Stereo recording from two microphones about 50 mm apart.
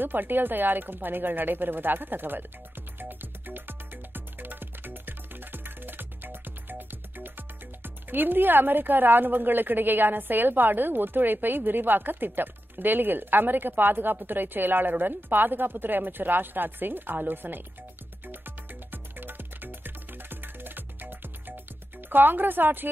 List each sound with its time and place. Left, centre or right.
0.0 s a woman's voice: right
3.0 s music: right
14.2 s a woman's voice: right
18.2 s music: right
22.1 s a woman's voice: right